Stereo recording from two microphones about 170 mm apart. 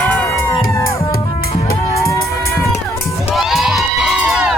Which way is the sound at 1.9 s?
15° left (ahead or behind).